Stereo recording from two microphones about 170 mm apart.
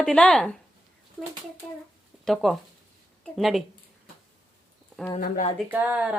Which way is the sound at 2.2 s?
Centre (ahead or behind).